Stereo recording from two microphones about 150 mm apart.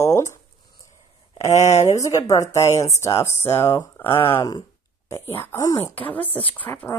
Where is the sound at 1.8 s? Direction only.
20° left (ahead or behind).